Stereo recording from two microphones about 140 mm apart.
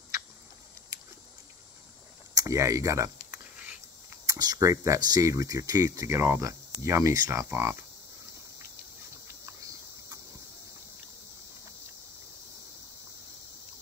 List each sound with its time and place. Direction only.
2.3 s speech: 20° right (ahead or behind)
9.3 s cricket: 25° right (ahead or behind)